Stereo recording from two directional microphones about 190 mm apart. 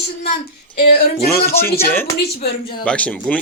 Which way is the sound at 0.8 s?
50° left (ahead or behind).